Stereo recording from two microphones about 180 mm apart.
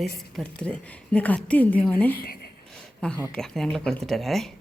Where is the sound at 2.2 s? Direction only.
55° left (ahead or behind).